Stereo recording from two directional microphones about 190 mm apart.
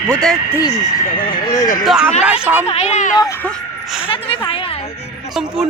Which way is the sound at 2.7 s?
35° left (ahead or behind).